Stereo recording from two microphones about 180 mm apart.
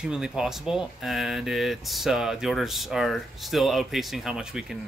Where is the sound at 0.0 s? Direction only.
5° right (ahead or behind).